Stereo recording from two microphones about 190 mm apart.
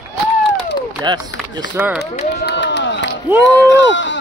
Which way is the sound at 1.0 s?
25° right (ahead or behind).